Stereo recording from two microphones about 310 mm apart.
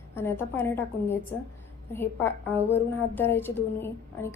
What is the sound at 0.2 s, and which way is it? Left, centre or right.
A woman's voice, centre.